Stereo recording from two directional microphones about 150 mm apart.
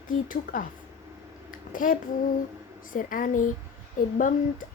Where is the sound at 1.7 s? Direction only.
65° left (ahead or behind).